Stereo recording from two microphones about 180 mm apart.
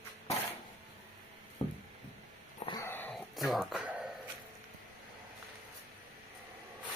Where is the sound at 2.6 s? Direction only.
15° left (ahead or behind).